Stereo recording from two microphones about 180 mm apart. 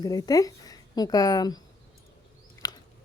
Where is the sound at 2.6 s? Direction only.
20° left (ahead or behind).